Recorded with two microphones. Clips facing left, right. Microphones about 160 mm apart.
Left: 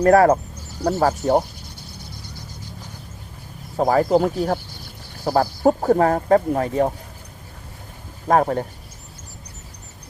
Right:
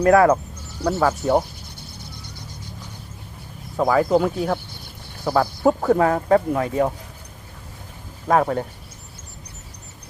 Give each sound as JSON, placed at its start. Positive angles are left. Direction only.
{"t": 0.0, "sound": "speech", "side_deg": 35}
{"t": 3.8, "sound": "speech", "side_deg": 40}
{"t": 8.3, "sound": "speech", "side_deg": 40}